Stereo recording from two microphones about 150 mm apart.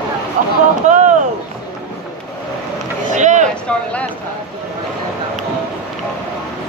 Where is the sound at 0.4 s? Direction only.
60° right (ahead or behind).